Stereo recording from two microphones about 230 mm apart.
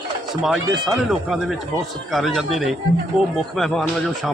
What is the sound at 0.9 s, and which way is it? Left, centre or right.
Speech, centre.